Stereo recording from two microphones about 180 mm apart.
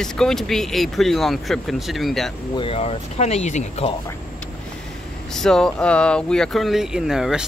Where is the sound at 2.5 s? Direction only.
30° left (ahead or behind).